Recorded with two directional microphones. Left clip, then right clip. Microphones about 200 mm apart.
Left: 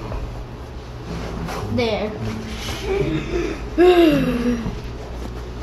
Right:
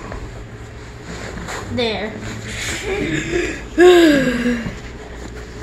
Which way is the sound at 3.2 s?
55° right (ahead or behind).